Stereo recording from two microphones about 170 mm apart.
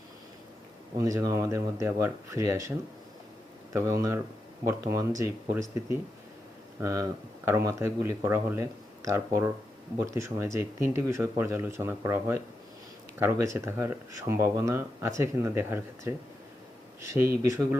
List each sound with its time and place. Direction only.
0.9 s speech: 20° right (ahead or behind)